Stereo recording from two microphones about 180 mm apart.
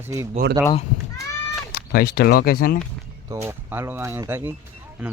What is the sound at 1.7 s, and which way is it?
Speech, 60° left (ahead or behind).